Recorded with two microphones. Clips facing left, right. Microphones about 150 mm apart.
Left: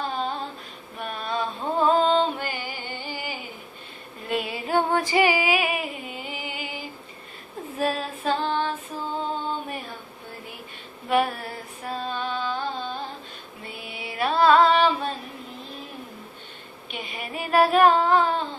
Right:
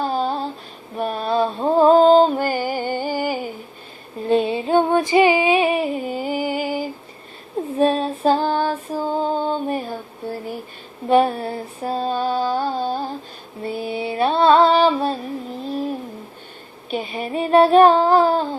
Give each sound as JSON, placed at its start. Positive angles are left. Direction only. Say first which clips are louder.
{"t": 0.0, "sound": "female singing", "louder": "right 7 dB", "side_deg": -35}
{"t": 0.9, "sound": "music", "louder": "right 9 dB", "side_deg": -35}
{"t": 4.3, "sound": "female singing", "louder": "right 9 dB", "side_deg": -30}
{"t": 7.8, "sound": "music", "louder": "right 8 dB", "side_deg": -30}
{"t": 16.9, "sound": "child singing", "louder": "right 10 dB", "side_deg": -35}